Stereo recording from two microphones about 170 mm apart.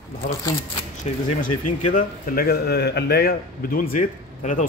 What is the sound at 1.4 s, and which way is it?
A man's voice, 50° left (ahead or behind).